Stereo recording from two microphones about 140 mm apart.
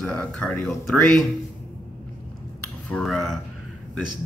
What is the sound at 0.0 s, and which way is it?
A man's voice, 10° left (ahead or behind).